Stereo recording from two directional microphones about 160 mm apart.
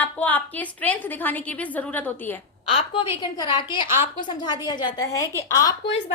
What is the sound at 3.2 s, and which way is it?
A woman's voice, 30° left (ahead or behind).